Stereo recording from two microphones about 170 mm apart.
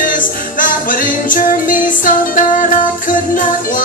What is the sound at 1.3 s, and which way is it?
Music, 50° left (ahead or behind).